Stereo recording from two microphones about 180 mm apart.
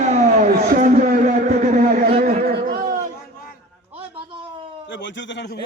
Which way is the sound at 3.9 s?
30° right (ahead or behind).